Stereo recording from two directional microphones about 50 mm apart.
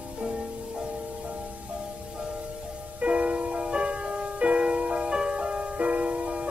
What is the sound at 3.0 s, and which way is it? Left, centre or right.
Music, right.